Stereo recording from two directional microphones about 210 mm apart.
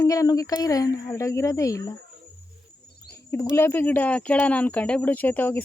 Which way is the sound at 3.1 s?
15° left (ahead or behind).